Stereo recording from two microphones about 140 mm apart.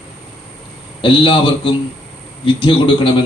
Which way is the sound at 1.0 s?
40° left (ahead or behind).